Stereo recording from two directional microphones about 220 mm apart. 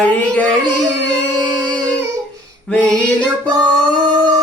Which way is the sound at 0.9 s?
5° left (ahead or behind).